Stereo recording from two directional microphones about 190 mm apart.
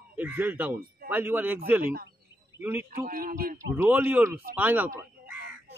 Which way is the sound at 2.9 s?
45° right (ahead or behind).